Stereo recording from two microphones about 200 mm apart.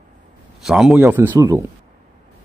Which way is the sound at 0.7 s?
Centre (ahead or behind).